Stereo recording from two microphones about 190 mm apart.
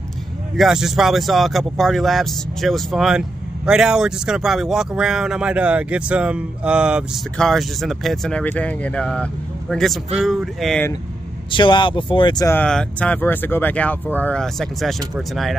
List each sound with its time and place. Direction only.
0.6 s speech: centre (ahead or behind)
11.5 s speech: 25° left (ahead or behind)
12.5 s speech: 5° left (ahead or behind)